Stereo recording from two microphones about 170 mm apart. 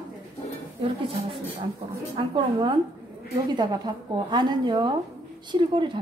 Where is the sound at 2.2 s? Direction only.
30° right (ahead or behind).